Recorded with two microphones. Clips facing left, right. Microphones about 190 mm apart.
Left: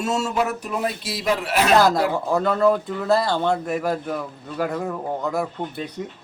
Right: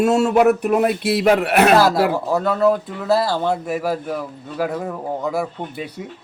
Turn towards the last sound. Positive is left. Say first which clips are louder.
# right 1 dB
turn(degrees=-5)  # may be behind; listen again after turning